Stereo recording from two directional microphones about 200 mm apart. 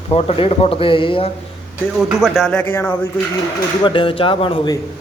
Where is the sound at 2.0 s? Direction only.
Centre (ahead or behind).